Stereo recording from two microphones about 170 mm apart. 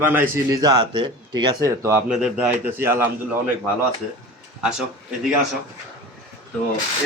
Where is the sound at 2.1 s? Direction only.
5° right (ahead or behind).